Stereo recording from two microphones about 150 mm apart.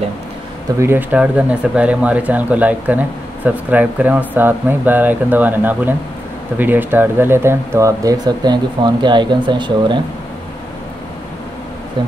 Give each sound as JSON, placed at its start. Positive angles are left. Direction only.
{"t": 0.7, "sound": "speech", "side_deg": -15}